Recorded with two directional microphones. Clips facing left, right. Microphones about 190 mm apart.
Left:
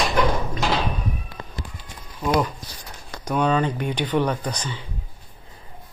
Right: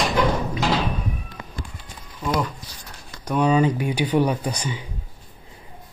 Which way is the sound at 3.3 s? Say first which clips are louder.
Right 2 dB; 5° right (ahead or behind).